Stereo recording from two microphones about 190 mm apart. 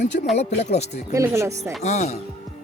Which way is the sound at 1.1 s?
15° right (ahead or behind).